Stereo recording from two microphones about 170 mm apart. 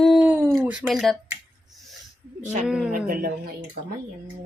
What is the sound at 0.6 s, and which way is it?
Speech, 5° right (ahead or behind).